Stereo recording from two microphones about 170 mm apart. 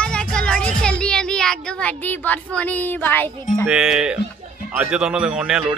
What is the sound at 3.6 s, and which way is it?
Speech, 5° right (ahead or behind).